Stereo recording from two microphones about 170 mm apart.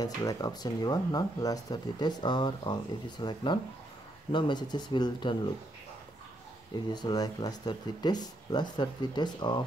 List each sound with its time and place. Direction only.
0.0 s speech: 20° left (ahead or behind)
6.9 s speech: 25° left (ahead or behind)